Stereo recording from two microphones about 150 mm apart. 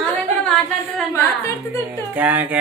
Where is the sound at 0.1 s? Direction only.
Centre (ahead or behind).